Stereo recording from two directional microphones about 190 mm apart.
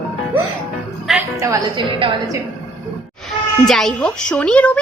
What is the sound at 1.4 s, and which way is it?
Speech, 15° right (ahead or behind).